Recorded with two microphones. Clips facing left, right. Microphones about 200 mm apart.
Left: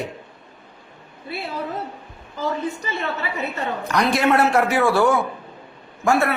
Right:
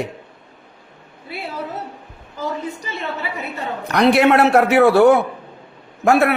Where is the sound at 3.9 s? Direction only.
65° right (ahead or behind).